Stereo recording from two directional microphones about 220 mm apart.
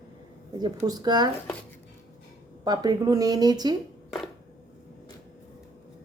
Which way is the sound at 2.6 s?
20° right (ahead or behind).